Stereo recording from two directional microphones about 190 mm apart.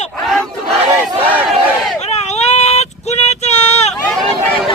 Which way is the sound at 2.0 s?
35° left (ahead or behind).